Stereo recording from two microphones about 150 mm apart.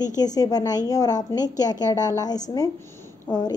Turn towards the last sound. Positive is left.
turn(degrees=25)  # may be behind; listen again after turning